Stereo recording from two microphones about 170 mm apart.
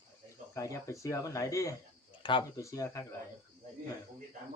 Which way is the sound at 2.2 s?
30° left (ahead or behind).